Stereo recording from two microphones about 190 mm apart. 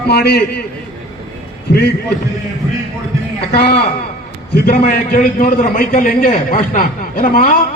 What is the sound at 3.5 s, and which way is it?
A man's voice, 60° left (ahead or behind).